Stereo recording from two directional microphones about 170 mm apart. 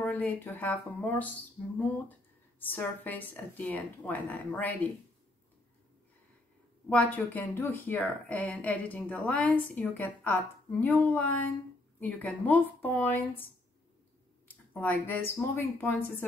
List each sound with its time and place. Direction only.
0.0 s speech: 10° left (ahead or behind)
6.9 s speech: 10° left (ahead or behind)
14.7 s speech: 10° left (ahead or behind)